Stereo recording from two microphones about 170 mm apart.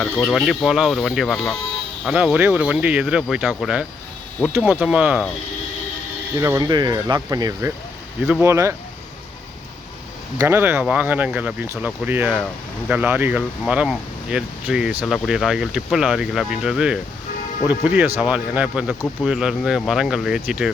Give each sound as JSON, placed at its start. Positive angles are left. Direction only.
{"t": 0.3, "sound": "speech", "side_deg": 0}
{"t": 6.4, "sound": "speech", "side_deg": -20}
{"t": 10.3, "sound": "speech", "side_deg": -15}